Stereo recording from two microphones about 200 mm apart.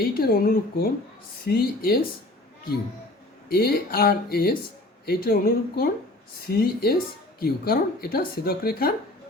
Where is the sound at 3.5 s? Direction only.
50° left (ahead or behind).